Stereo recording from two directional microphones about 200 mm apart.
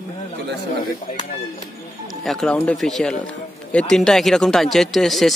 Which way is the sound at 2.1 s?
Centre (ahead or behind).